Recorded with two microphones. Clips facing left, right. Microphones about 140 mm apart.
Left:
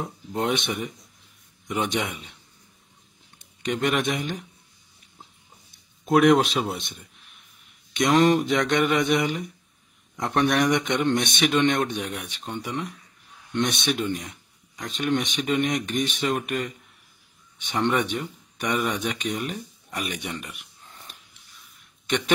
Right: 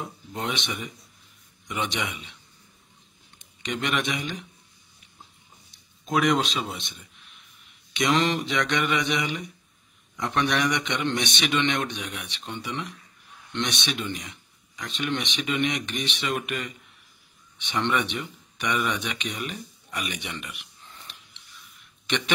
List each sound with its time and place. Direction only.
0.4 s speech: 55° left (ahead or behind)
3.6 s speech: 50° left (ahead or behind)
6.0 s speech: 60° left (ahead or behind)
7.9 s speech: 50° left (ahead or behind)